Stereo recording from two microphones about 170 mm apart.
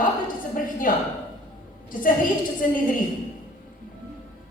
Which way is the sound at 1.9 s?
55° left (ahead or behind).